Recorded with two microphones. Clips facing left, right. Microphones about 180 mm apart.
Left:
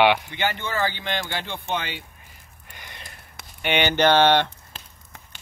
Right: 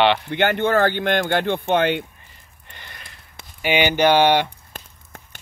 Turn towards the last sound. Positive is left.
turn(degrees=-10)  # may be behind; listen again after turning